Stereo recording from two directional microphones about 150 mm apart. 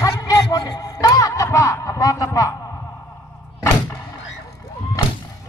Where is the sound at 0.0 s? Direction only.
25° left (ahead or behind).